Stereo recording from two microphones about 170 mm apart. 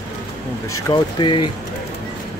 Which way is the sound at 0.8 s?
25° left (ahead or behind).